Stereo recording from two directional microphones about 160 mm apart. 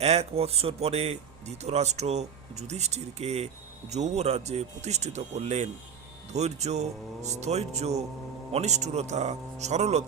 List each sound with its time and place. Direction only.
0.0 s speech: 40° right (ahead or behind)